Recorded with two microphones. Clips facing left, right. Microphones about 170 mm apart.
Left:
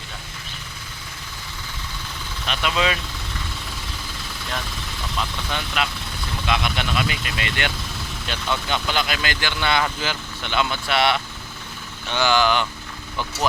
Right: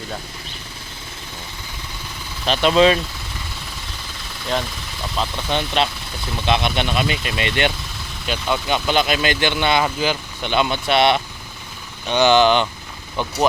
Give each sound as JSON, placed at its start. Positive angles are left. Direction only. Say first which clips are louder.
{"t": 2.5, "sound": "speech", "louder": "right 9 dB", "side_deg": -30}
{"t": 5.1, "sound": "speech", "louder": "right 6 dB", "side_deg": -30}